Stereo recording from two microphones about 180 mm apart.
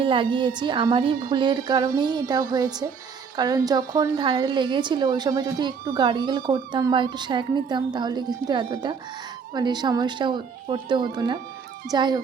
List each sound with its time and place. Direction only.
0.0 s speech: 30° right (ahead or behind)